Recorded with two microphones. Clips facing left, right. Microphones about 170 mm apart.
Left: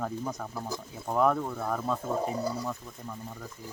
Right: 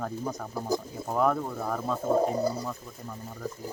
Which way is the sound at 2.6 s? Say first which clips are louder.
Even; 5° right (ahead or behind).